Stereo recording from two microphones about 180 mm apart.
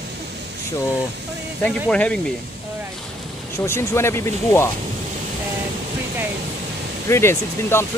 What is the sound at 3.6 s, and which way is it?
Speech, 15° left (ahead or behind).